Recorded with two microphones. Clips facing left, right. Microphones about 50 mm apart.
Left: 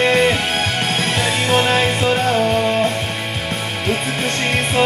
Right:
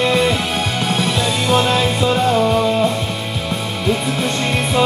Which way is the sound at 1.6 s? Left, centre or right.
Left.